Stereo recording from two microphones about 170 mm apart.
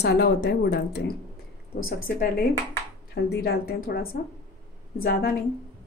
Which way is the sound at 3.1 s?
70° left (ahead or behind).